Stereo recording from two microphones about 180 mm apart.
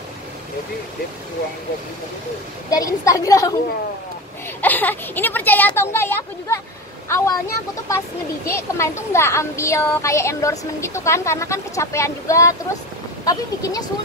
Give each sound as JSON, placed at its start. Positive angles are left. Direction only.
{"t": 2.7, "sound": "a woman's voice", "side_deg": 20}
{"t": 4.6, "sound": "a woman's voice", "side_deg": 10}